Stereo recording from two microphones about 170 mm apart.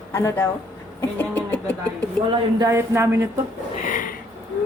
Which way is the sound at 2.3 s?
20° right (ahead or behind).